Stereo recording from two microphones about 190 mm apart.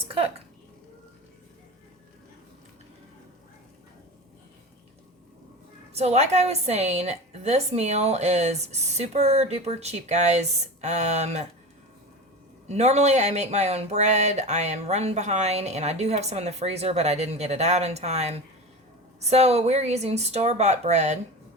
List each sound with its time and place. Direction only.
0.0 s a sound: 30° right (ahead or behind)
5.9 s speech: 35° right (ahead or behind)
12.6 s speech: 35° right (ahead or behind)